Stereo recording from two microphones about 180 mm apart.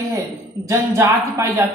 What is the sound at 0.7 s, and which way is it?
Speech, 15° right (ahead or behind).